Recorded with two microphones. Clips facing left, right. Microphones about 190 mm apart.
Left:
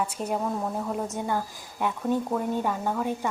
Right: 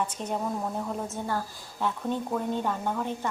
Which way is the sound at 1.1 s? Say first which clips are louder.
Left 3 dB; 15° left (ahead or behind).